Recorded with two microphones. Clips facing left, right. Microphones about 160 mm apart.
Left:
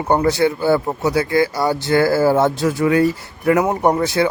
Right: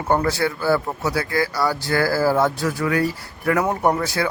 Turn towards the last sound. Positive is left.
turn(degrees=25)  # may be behind; listen again after turning